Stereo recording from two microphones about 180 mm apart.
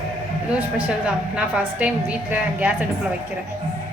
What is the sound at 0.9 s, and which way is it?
A woman's voice, 5° right (ahead or behind).